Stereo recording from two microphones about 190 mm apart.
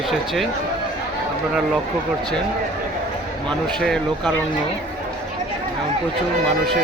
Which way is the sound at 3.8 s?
5° left (ahead or behind).